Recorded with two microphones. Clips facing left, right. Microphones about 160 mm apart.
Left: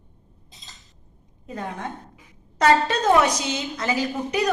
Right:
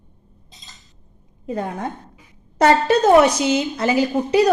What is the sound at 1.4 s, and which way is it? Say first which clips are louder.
A woman's voice: right 6 dB; 35° right (ahead or behind).